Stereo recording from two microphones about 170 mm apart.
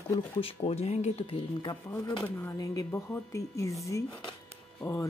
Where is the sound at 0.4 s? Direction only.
35° left (ahead or behind).